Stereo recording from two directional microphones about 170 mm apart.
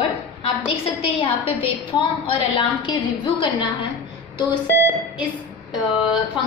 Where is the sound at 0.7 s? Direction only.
35° left (ahead or behind).